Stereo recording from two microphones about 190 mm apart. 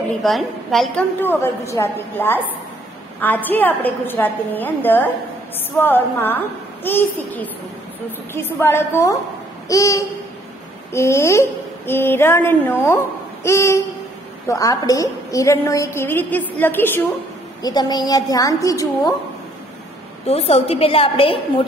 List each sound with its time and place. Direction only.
0.2 s a woman's voice: centre (ahead or behind)
8.3 s a woman's voice: 10° left (ahead or behind)
17.6 s a woman's voice: 20° left (ahead or behind)
20.2 s a woman's voice: 30° left (ahead or behind)